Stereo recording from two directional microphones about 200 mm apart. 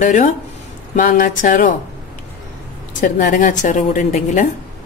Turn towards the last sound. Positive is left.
turn(degrees=40)  # may be behind; listen again after turning